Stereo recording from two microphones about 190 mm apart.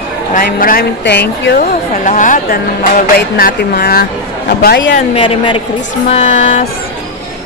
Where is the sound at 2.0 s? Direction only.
45° left (ahead or behind).